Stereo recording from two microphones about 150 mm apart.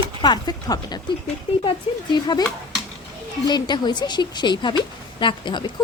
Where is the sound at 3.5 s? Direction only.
30° left (ahead or behind).